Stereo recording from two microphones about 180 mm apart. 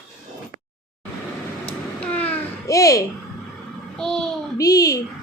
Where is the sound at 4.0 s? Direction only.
5° left (ahead or behind).